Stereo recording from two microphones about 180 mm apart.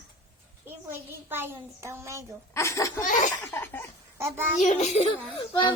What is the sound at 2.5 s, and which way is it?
Speech, 15° left (ahead or behind).